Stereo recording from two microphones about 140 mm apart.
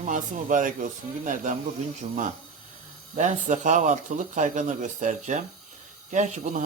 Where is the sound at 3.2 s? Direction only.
60° right (ahead or behind).